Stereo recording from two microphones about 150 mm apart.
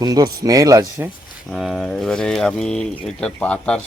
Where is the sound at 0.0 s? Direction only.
25° right (ahead or behind).